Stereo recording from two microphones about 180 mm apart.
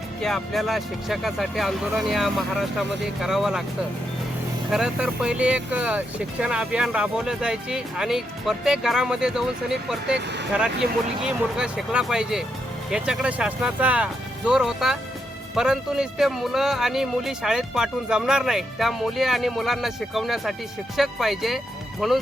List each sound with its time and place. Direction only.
0.2 s speech: centre (ahead or behind)
4.7 s speech: 5° right (ahead or behind)
10.2 s speech: 75° right (ahead or behind)
11.2 s speech: 5° right (ahead or behind)